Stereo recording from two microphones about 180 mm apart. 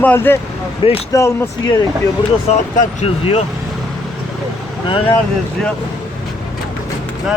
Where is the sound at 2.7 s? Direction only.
40° left (ahead or behind).